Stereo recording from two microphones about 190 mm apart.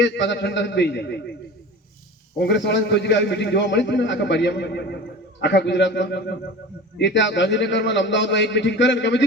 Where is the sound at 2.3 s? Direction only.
65° left (ahead or behind).